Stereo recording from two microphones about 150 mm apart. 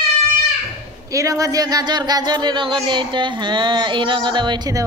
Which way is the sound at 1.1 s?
20° right (ahead or behind).